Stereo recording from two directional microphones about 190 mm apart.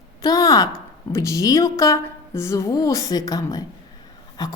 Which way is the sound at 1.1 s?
15° left (ahead or behind).